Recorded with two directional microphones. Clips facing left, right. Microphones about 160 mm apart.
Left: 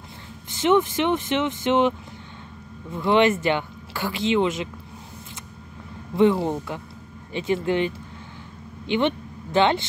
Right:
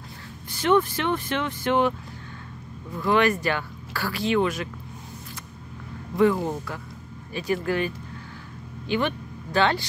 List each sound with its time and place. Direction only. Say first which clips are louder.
0.5 s speech: left 2 dB; 20° left (ahead or behind)
6.1 s speech: left 2 dB; 25° left (ahead or behind)